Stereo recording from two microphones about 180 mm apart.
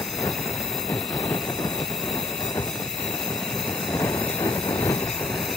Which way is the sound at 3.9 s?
15° left (ahead or behind).